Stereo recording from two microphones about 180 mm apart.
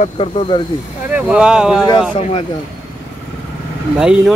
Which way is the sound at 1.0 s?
5° right (ahead or behind).